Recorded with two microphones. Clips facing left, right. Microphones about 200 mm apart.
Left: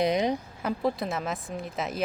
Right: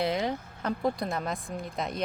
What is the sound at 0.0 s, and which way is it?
Speech, 20° left (ahead or behind).